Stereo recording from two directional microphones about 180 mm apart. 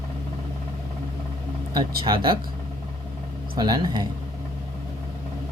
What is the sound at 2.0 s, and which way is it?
Speech, 25° right (ahead or behind).